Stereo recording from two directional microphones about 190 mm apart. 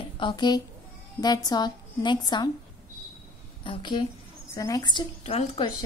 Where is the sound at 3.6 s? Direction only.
25° left (ahead or behind).